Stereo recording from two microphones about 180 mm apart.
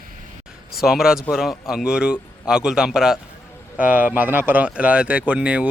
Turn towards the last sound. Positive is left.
turn(degrees=-5)  # may be behind; listen again after turning